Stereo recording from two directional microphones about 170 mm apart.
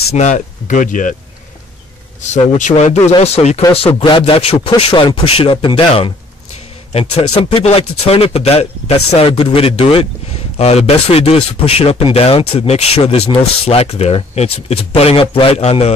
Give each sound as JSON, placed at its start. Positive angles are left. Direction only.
{"t": 0.1, "sound": "speech", "side_deg": 45}
{"t": 2.2, "sound": "a man's voice", "side_deg": 45}